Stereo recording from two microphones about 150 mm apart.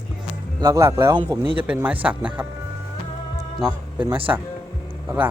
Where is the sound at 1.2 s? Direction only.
30° right (ahead or behind).